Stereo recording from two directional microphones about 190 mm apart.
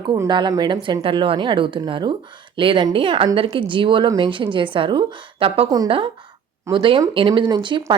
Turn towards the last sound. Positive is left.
turn(degrees=-25)  # may be behind; listen again after turning